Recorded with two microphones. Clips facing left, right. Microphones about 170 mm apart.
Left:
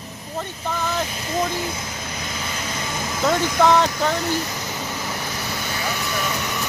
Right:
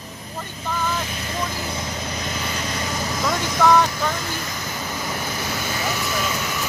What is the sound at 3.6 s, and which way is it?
Speech, 25° left (ahead or behind).